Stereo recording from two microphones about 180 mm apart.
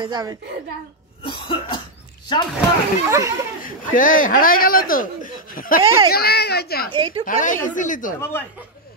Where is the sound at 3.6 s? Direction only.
50° left (ahead or behind).